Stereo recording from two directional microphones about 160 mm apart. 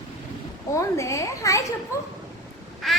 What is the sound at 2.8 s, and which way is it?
Quack, centre (ahead or behind).